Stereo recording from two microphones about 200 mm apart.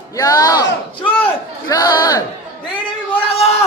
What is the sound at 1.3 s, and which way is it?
Crowd, 20° left (ahead or behind).